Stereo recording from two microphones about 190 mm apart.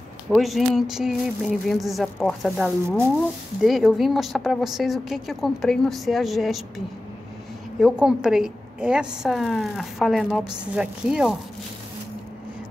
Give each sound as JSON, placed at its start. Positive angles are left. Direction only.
{"t": 0.3, "sound": "a woman's voice", "side_deg": 0}
{"t": 7.8, "sound": "a woman's voice", "side_deg": -5}